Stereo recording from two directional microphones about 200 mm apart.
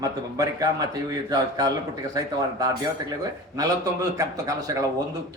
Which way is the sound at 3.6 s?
15° right (ahead or behind).